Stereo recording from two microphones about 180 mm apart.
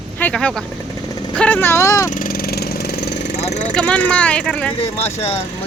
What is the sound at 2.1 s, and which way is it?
Vehicle, 50° left (ahead or behind).